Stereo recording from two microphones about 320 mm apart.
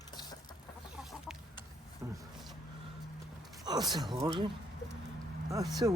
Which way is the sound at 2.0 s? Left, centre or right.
Centre.